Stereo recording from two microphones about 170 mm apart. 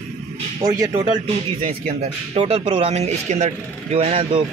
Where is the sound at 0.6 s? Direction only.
20° right (ahead or behind).